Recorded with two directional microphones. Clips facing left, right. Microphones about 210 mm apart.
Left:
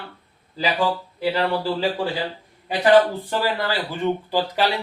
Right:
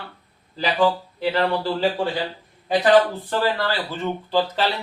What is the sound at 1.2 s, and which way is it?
Speech, 10° left (ahead or behind).